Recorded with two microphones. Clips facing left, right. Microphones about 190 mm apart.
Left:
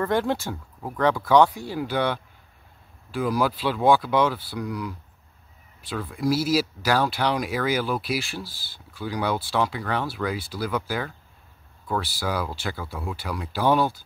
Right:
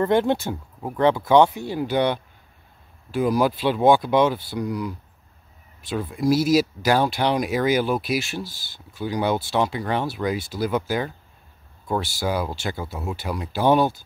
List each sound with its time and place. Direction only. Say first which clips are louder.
0.0 s speech: right 4 dB; 20° right (ahead or behind)
12.2 s speech: right 3 dB; 25° right (ahead or behind)